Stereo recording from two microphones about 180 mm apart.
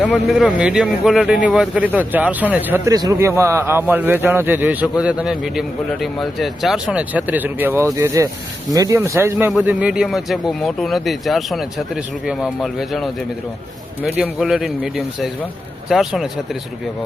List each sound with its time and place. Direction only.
0.0 s a man's voice: 5° right (ahead or behind)